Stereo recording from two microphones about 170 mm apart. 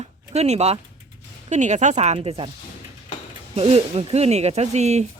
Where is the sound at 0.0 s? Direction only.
40° right (ahead or behind).